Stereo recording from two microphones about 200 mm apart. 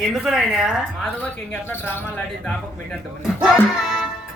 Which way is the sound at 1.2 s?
10° left (ahead or behind).